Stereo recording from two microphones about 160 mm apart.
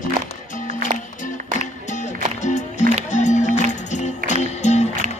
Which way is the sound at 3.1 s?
50° left (ahead or behind).